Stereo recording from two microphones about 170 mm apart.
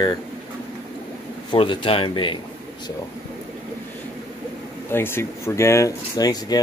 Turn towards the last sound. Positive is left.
turn(degrees=25)  # may be behind; listen again after turning